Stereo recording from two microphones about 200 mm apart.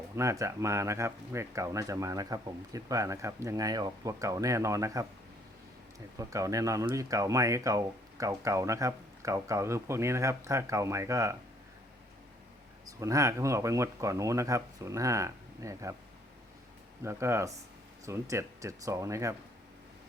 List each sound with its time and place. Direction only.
0.2 s speech: 15° right (ahead or behind)
6.1 s speech: 15° right (ahead or behind)
12.8 s speech: 15° right (ahead or behind)
17.0 s speech: 15° right (ahead or behind)